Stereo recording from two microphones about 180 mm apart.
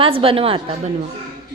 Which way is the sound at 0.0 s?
30° right (ahead or behind).